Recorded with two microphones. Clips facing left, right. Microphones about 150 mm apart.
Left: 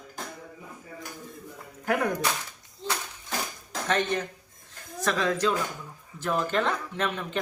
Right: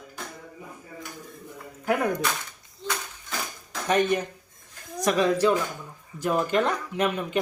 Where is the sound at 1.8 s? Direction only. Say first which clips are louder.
Right 2 dB; 5° right (ahead or behind).